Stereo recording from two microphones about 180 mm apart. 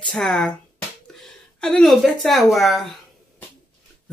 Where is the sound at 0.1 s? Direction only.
5° left (ahead or behind).